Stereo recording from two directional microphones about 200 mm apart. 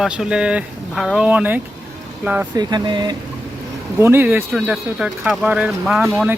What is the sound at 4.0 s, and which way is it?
Speech, 10° right (ahead or behind).